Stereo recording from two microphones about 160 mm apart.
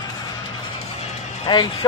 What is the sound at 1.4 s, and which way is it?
Speech, 30° left (ahead or behind).